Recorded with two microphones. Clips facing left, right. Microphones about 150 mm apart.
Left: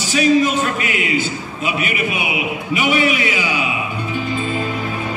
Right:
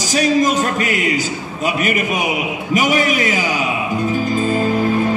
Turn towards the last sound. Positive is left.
turn(degrees=-40)  # may be behind; listen again after turning